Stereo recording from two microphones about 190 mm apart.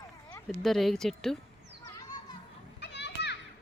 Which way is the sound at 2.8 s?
65° left (ahead or behind).